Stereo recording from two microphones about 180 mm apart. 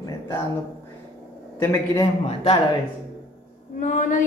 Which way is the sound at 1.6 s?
15° left (ahead or behind).